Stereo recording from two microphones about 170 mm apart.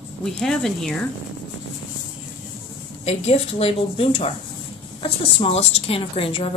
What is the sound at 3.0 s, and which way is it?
A woman's voice, 40° left (ahead or behind).